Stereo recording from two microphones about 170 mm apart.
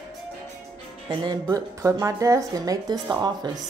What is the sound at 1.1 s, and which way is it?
Speech, 25° right (ahead or behind).